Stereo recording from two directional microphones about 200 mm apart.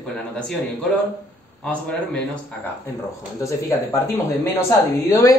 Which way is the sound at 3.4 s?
15° left (ahead or behind).